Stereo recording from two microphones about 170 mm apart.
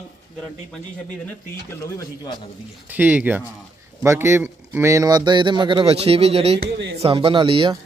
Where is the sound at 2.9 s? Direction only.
10° right (ahead or behind).